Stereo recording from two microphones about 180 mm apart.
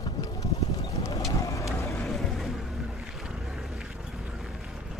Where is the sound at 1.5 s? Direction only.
15° left (ahead or behind).